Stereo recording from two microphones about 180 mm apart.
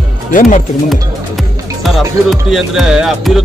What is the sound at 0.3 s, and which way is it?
Speech, 45° left (ahead or behind).